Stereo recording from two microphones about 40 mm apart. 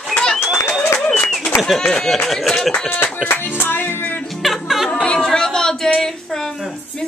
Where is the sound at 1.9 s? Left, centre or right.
Centre.